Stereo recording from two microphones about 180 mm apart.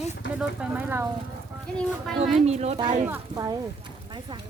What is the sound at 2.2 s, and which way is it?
Speech, 35° right (ahead or behind).